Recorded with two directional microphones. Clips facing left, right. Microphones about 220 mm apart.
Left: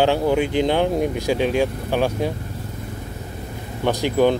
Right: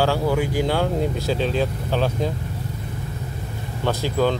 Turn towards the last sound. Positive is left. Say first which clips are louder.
# left 4 dB
turn(degrees=15)  # may be behind; listen again after turning